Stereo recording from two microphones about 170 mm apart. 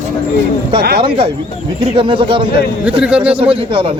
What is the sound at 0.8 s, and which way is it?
Speech, 65° right (ahead or behind).